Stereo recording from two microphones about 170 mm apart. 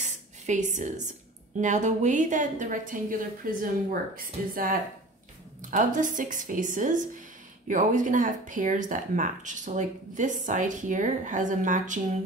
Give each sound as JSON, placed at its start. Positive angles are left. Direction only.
{"t": 0.5, "sound": "speech", "side_deg": -45}